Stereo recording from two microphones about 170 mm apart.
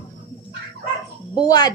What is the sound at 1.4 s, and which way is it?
Speech, 20° left (ahead or behind).